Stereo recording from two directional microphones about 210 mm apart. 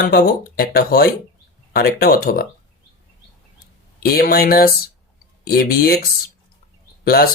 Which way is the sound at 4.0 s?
45° left (ahead or behind).